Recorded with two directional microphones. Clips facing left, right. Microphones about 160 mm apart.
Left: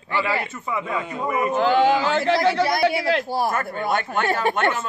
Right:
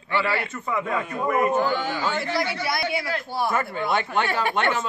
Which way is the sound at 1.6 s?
90° left.